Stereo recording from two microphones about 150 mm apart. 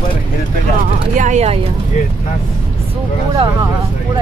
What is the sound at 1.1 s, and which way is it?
Speech, 55° right (ahead or behind).